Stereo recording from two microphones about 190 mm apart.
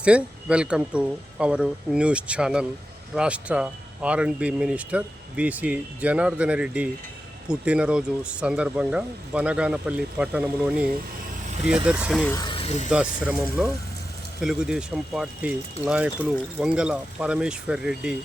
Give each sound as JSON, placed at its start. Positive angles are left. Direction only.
{"t": 0.0, "sound": "speech", "side_deg": -5}
{"t": 11.9, "sound": "speech", "side_deg": -5}
{"t": 12.4, "sound": "speech", "side_deg": 25}
{"t": 12.9, "sound": "speech", "side_deg": -5}